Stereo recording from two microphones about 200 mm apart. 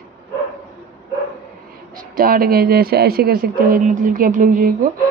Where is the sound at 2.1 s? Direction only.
45° right (ahead or behind).